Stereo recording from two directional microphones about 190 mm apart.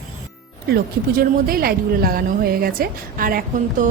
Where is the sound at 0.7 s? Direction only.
55° right (ahead or behind).